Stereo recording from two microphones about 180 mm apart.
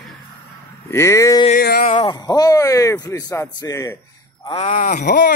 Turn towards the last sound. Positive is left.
turn(degrees=45)  # may be behind; listen again after turning